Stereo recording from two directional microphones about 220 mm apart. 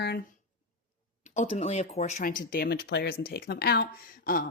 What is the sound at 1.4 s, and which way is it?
Speech, 30° left (ahead or behind).